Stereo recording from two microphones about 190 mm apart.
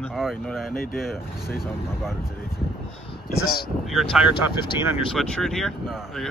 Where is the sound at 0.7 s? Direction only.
50° left (ahead or behind).